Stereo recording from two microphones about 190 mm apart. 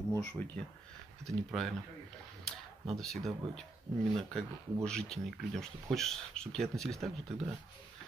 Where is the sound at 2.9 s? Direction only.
Centre (ahead or behind).